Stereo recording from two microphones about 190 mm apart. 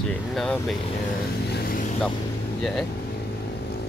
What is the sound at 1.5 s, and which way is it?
Vehicle, 50° left (ahead or behind).